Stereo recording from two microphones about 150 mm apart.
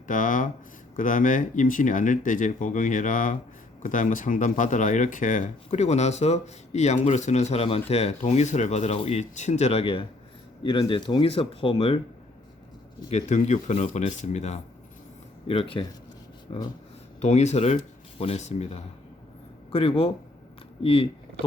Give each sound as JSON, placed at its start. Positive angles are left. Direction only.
{"t": 0.1, "sound": "speech", "side_deg": 60}
{"t": 13.1, "sound": "speech", "side_deg": 50}
{"t": 15.4, "sound": "speech", "side_deg": 35}